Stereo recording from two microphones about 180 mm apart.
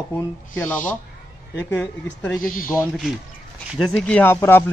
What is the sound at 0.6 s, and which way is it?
Speech, 10° left (ahead or behind).